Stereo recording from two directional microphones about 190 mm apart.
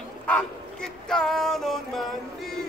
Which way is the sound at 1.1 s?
Centre (ahead or behind).